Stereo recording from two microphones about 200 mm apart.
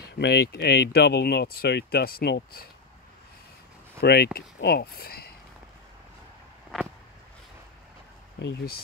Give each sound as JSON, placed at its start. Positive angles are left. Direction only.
{"t": 0.2, "sound": "speech", "side_deg": 55}
{"t": 4.0, "sound": "speech", "side_deg": 50}
{"t": 8.4, "sound": "speech", "side_deg": 60}